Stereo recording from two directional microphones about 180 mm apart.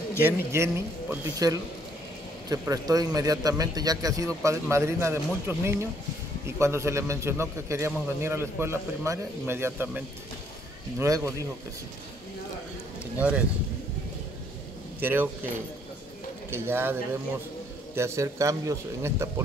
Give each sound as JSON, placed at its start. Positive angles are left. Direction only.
{"t": 0.2, "sound": "a man's voice", "side_deg": -15}
{"t": 15.0, "sound": "speech", "side_deg": -10}
{"t": 16.4, "sound": "a man's voice", "side_deg": -15}